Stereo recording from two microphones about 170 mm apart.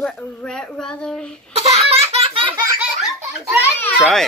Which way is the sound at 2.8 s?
5° right (ahead or behind).